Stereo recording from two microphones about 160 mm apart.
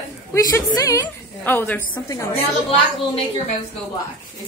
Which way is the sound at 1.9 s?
20° left (ahead or behind).